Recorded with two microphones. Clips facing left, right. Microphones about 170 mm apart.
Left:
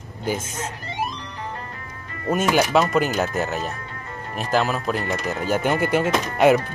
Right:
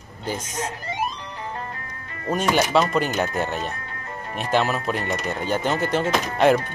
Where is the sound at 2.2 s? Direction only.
5° left (ahead or behind).